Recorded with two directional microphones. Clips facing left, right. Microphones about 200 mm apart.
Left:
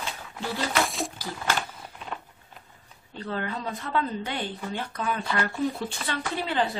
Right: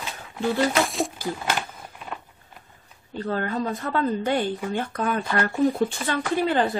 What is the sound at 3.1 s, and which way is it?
Speech, 45° right (ahead or behind).